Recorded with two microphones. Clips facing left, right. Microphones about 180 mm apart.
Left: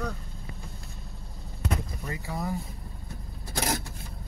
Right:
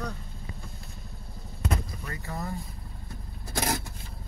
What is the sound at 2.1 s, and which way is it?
Speech, 10° left (ahead or behind).